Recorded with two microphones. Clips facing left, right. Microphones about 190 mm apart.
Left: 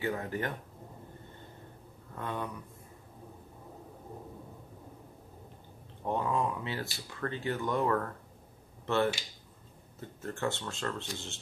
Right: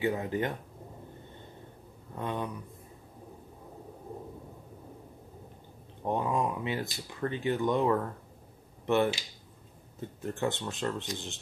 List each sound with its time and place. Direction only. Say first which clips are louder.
0.0 s speech: right 4 dB; 15° right (ahead or behind)
2.1 s speech: right 3 dB; 20° right (ahead or behind)
6.0 s speech: right 2 dB; 15° right (ahead or behind)